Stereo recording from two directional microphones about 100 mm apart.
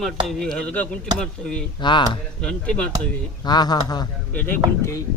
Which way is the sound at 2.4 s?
10° left (ahead or behind).